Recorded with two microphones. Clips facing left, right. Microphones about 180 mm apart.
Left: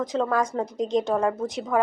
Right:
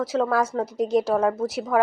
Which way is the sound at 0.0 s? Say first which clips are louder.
Right 2 dB; 5° right (ahead or behind).